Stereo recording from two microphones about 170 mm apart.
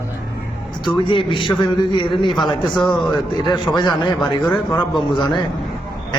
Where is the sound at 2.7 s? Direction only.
Centre (ahead or behind).